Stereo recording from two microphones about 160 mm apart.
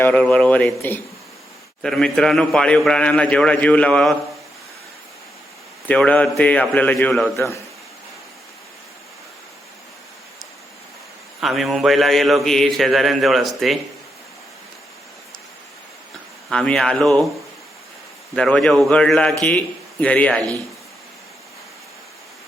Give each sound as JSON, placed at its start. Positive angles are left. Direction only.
{"t": 0.0, "sound": "a man's voice", "side_deg": 10}
{"t": 5.9, "sound": "a man's voice", "side_deg": 10}
{"t": 7.3, "sound": "a man's voice", "side_deg": 15}
{"t": 11.3, "sound": "a man's voice", "side_deg": 0}
{"t": 16.5, "sound": "a man's voice", "side_deg": 5}
{"t": 18.3, "sound": "a man's voice", "side_deg": 5}